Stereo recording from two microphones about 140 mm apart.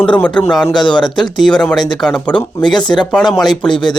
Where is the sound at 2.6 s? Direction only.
30° left (ahead or behind).